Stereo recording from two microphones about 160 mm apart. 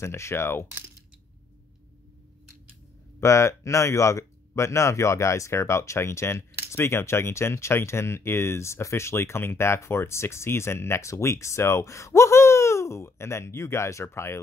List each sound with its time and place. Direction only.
0.0 s speech: 15° left (ahead or behind)
3.2 s speech: 20° left (ahead or behind)